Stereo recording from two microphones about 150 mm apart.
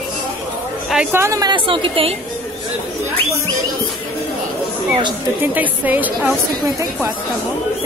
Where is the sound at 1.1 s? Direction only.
20° right (ahead or behind); by 2.1 s 35° right (ahead or behind).